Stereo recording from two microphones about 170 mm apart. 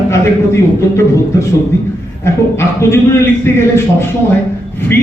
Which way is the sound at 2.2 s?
15° left (ahead or behind).